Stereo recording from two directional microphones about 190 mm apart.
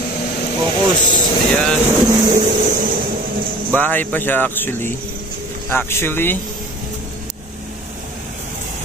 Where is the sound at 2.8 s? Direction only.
50° right (ahead or behind).